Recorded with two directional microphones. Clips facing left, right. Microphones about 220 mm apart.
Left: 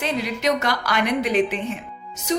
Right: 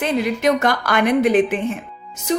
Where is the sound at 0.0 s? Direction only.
50° right (ahead or behind).